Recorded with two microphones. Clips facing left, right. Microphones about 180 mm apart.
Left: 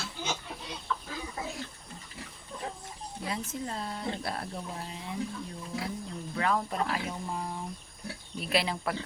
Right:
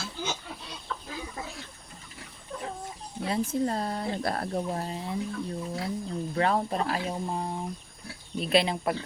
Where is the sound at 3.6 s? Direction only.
45° right (ahead or behind).